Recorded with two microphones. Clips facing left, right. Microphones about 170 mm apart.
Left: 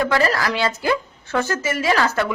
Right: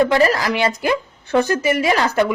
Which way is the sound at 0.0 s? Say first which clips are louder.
Right 4 dB; 20° right (ahead or behind).